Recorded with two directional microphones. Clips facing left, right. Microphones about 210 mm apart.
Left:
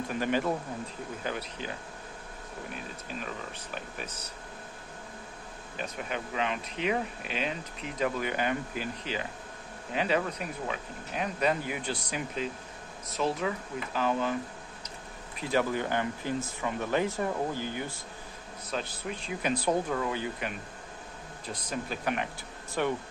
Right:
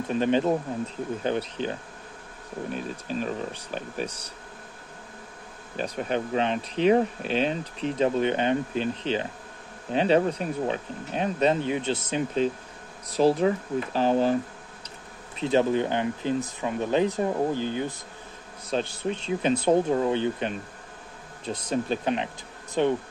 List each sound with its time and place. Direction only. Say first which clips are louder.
0.1 s speech: right 7 dB; 25° right (ahead or behind)
5.8 s speech: right 8 dB; 35° right (ahead or behind)
15.3 s speech: right 6 dB; 25° right (ahead or behind)